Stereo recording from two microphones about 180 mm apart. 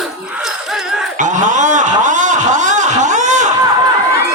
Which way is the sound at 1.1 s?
45° right (ahead or behind).